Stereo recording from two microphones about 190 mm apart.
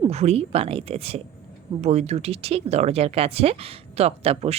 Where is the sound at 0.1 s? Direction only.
35° right (ahead or behind).